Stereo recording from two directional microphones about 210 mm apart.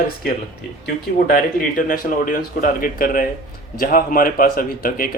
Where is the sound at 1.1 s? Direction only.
40° left (ahead or behind).